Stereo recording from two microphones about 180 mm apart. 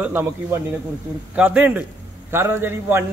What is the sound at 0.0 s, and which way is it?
A man's voice, 10° right (ahead or behind).